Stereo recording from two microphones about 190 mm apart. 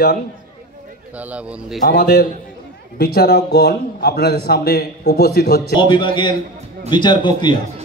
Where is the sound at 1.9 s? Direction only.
60° left (ahead or behind).